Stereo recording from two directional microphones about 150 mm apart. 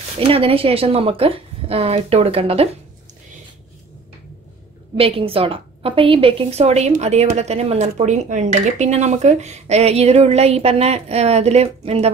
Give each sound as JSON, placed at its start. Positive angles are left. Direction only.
{"t": 0.3, "sound": "a woman's voice", "side_deg": -40}
{"t": 4.9, "sound": "a woman's voice", "side_deg": -40}